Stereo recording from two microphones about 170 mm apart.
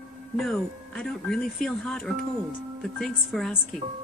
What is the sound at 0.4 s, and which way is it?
Speech, 5° left (ahead or behind).